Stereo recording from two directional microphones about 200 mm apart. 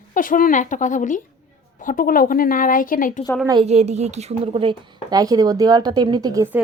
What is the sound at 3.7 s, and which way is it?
Speech, 30° right (ahead or behind).